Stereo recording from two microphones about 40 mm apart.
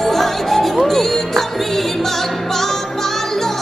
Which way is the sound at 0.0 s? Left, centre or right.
Centre.